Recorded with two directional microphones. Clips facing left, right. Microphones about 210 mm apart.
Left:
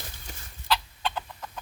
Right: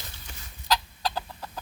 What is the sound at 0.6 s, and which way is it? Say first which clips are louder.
Chicken: right 1 dB; 35° right (ahead or behind).